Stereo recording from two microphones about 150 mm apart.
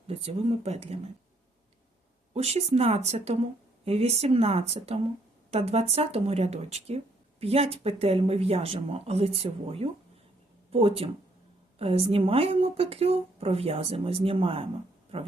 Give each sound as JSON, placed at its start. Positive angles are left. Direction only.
{"t": 0.1, "sound": "speech", "side_deg": -40}
{"t": 2.3, "sound": "speech", "side_deg": -45}